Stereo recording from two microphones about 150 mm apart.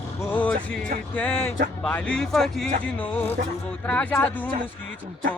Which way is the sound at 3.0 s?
15° left (ahead or behind).